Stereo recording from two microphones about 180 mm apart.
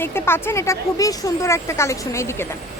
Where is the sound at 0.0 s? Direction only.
15° left (ahead or behind).